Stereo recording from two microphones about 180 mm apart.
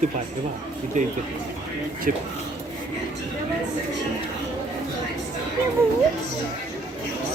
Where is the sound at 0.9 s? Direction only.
40° right (ahead or behind).